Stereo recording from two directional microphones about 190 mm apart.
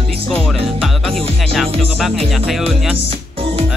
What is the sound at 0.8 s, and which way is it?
Music, centre (ahead or behind).